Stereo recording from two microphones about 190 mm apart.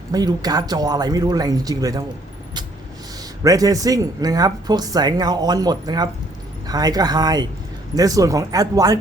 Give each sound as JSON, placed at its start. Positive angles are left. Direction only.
{"t": 0.1, "sound": "speech", "side_deg": -20}
{"t": 3.4, "sound": "speech", "side_deg": -20}